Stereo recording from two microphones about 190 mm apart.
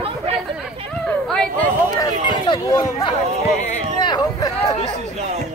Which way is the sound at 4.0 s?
20° left (ahead or behind).